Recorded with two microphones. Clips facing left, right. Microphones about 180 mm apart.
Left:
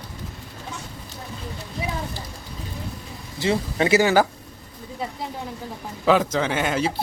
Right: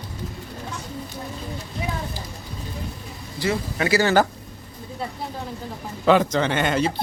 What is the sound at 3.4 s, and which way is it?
Speech, 25° left (ahead or behind).